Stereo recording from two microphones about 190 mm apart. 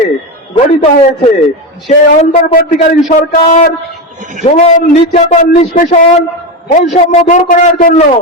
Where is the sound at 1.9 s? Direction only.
45° left (ahead or behind).